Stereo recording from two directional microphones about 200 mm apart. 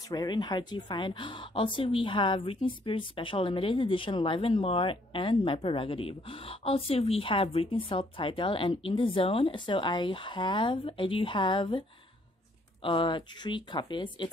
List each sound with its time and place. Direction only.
0.1 s speech: 20° left (ahead or behind)
12.8 s speech: 25° left (ahead or behind)